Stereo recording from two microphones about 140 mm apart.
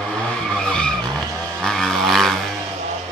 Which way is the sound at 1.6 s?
5° left (ahead or behind).